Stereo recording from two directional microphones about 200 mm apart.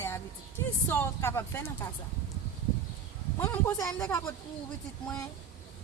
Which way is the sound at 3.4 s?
10° left (ahead or behind).